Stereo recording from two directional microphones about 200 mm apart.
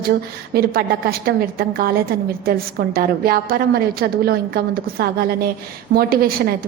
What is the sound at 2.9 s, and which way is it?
A woman's voice, 45° right (ahead or behind).